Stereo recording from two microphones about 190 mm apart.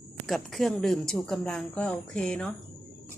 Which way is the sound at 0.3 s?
Centre (ahead or behind).